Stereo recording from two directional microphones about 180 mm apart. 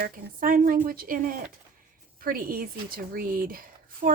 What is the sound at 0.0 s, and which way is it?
Speech, 50° right (ahead or behind).